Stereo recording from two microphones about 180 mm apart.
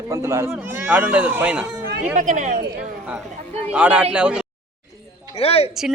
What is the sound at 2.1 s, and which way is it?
Speech, 45° right (ahead or behind).